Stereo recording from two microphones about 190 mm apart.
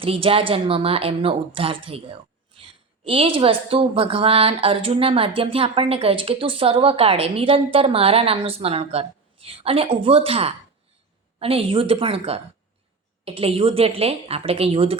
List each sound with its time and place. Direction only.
0.0 s a woman's voice: 30° right (ahead or behind)